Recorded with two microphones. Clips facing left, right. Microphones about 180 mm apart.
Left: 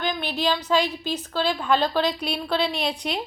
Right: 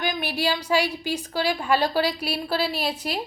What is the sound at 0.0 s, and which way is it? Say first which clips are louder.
A woman's voice: even; 10° right (ahead or behind).